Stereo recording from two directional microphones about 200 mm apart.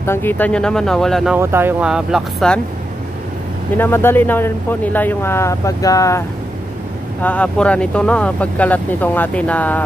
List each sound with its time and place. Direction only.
0.0 s speech: 10° left (ahead or behind)
1.4 s speech: 10° right (ahead or behind)
3.7 s speech: 10° left (ahead or behind)